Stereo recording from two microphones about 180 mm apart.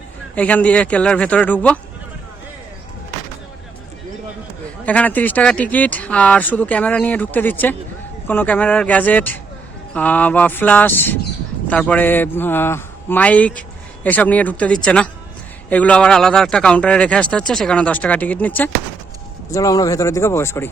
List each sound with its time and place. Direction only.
0.3 s speech: 10° left (ahead or behind)
4.9 s speech: 10° left (ahead or behind)